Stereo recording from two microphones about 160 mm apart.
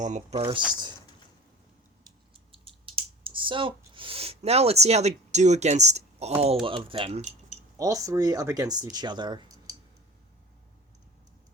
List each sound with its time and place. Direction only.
0.0 s speech: 45° right (ahead or behind)
2.0 s typing: 35° right (ahead or behind)
6.7 s speech: 35° right (ahead or behind)
7.8 s speech: 20° right (ahead or behind)